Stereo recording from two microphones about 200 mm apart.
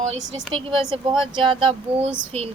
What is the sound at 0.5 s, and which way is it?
Speech, 25° right (ahead or behind).